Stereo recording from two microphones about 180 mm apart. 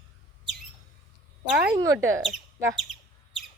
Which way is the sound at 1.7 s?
20° right (ahead or behind).